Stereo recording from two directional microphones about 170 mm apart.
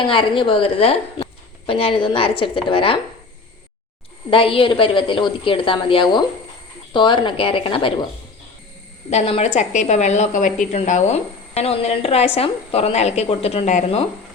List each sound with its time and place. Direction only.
0.0 s a woman's voice: 30° left (ahead or behind)
4.3 s a woman's voice: 30° left (ahead or behind)
9.0 s a woman's voice: 40° left (ahead or behind)